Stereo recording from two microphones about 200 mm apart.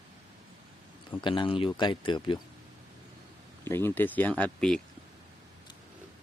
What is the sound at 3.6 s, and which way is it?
Speech, 10° left (ahead or behind).